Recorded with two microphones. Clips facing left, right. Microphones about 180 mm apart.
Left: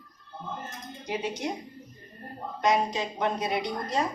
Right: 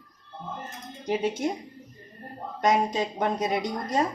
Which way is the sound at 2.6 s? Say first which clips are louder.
Right 2 dB; 45° right (ahead or behind).